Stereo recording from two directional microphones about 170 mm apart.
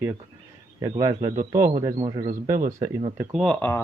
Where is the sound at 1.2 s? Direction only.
40° right (ahead or behind).